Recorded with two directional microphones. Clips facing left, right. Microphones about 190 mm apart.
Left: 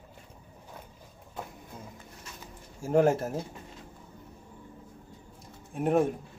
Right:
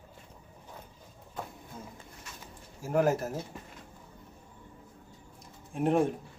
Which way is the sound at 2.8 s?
30° left (ahead or behind).